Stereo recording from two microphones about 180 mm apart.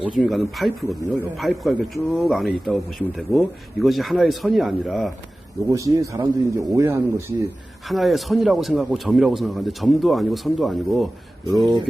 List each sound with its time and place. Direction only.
0.2 s speech: centre (ahead or behind)
5.6 s speech: 20° right (ahead or behind)
7.9 s speech: centre (ahead or behind)